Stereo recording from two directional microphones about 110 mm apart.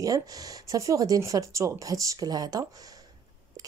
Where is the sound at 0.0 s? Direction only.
35° right (ahead or behind).